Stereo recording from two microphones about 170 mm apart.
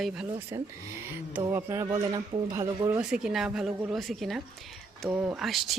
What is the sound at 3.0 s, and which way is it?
Speech, 5° right (ahead or behind).